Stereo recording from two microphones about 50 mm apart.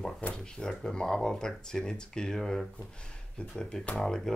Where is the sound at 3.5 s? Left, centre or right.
Left.